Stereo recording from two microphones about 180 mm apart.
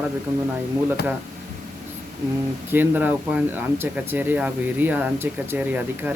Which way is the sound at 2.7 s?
10° right (ahead or behind).